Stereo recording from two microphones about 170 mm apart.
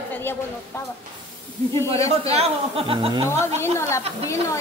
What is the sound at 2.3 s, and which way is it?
Speech, 35° right (ahead or behind).